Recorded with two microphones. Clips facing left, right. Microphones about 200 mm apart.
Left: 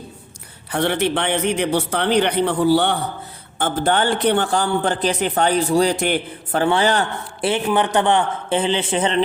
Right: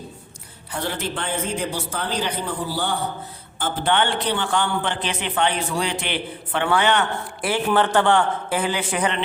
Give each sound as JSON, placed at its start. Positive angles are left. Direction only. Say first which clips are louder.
{"t": 0.7, "sound": "speech", "louder": "left 8 dB", "side_deg": 70}
{"t": 3.6, "sound": "a man's voice", "louder": "left 3 dB", "side_deg": 40}
{"t": 4.2, "sound": "a man's voice", "louder": "left 7 dB", "side_deg": 55}
{"t": 4.5, "sound": "a man's voice", "louder": "left 4 dB", "side_deg": 40}
{"t": 6.7, "sound": "a man's voice", "louder": "left 1 dB", "side_deg": 30}
{"t": 7.7, "sound": "a man's voice", "louder": "right 1 dB", "side_deg": 15}